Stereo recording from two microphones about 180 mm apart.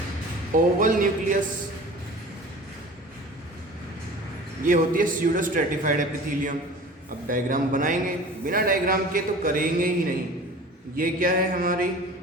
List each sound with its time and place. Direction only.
0.5 s a man's voice: 45° right (ahead or behind)
4.6 s a man's voice: 50° right (ahead or behind)